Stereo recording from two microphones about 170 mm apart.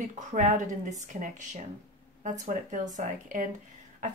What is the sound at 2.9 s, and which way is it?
Speech, 50° right (ahead or behind).